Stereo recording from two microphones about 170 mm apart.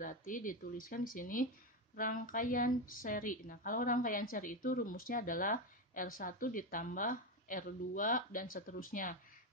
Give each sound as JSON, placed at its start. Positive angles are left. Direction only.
{"t": 0.0, "sound": "speech", "side_deg": 50}